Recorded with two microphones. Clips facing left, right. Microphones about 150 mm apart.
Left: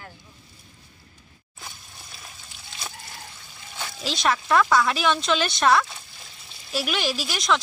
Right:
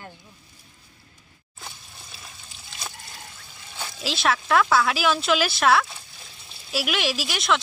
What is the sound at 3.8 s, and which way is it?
Speech, centre (ahead or behind).